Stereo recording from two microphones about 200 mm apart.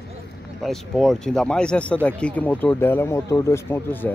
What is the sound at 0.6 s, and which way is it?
A man's voice, centre (ahead or behind).